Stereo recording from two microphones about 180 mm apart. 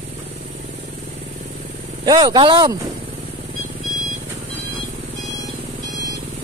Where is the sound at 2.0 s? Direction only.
20° right (ahead or behind).